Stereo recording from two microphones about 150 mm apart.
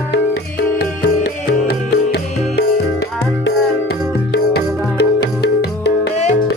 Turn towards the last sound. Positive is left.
turn(degrees=90)